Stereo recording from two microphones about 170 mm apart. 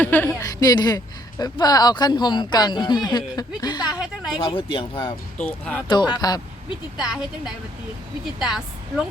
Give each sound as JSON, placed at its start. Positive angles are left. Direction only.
{"t": 0.0, "sound": "speech", "side_deg": 10}
{"t": 3.9, "sound": "a sound", "side_deg": -5}
{"t": 4.4, "sound": "speech", "side_deg": 30}
{"t": 5.4, "sound": "speech", "side_deg": 10}
{"t": 6.1, "sound": "speech", "side_deg": 25}
{"t": 7.0, "sound": "a woman's voice", "side_deg": 0}